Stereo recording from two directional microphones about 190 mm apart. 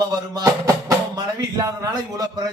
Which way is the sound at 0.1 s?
20° right (ahead or behind).